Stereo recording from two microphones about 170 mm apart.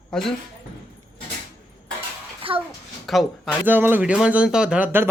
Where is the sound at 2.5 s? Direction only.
30° right (ahead or behind).